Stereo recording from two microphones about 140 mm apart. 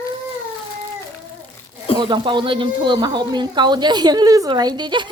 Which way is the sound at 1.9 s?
35° right (ahead or behind).